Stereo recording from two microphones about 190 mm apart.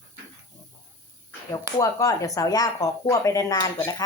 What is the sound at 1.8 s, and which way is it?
Speech, 15° left (ahead or behind).